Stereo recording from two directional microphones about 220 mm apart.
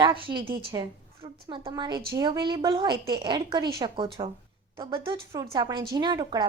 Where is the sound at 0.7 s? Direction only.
20° right (ahead or behind).